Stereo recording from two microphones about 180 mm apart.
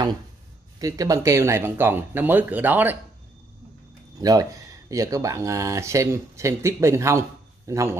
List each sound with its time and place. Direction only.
0.7 s speech: 20° right (ahead or behind)
4.2 s speech: 20° right (ahead or behind)